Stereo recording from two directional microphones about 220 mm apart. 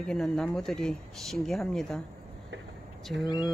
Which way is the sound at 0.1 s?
5° left (ahead or behind).